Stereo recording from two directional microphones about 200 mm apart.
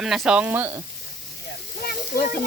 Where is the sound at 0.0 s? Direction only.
Centre (ahead or behind).